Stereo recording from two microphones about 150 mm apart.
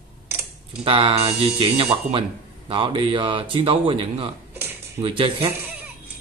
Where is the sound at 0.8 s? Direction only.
35° right (ahead or behind).